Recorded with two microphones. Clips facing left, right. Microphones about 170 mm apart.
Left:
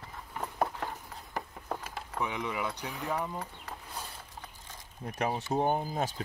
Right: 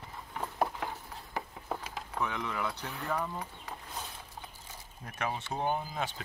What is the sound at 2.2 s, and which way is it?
Speech, 15° left (ahead or behind).